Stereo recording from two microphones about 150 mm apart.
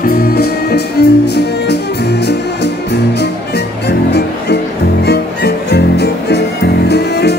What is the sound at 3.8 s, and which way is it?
Music, 90° left.